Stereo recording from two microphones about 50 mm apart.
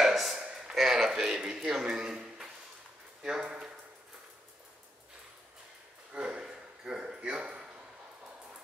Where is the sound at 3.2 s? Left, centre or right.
Centre.